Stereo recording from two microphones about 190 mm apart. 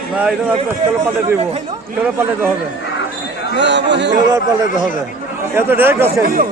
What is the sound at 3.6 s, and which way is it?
Speech, 65° right (ahead or behind).